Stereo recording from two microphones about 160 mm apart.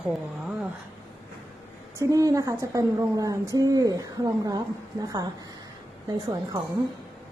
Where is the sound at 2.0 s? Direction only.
20° right (ahead or behind).